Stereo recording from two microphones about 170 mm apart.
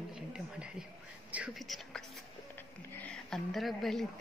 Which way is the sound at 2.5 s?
5° left (ahead or behind).